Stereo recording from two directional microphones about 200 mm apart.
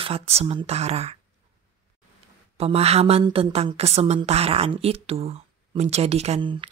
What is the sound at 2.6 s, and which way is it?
A woman's voice, 30° right (ahead or behind).